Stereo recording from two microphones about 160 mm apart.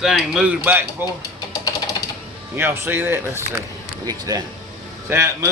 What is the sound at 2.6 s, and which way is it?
Speech, 15° right (ahead or behind).